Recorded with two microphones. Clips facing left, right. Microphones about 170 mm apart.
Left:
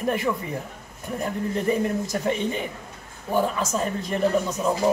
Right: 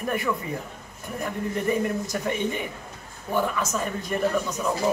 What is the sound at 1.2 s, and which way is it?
Speech, 30° left (ahead or behind).